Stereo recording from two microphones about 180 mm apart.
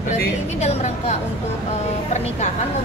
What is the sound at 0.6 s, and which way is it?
Speech, 35° left (ahead or behind).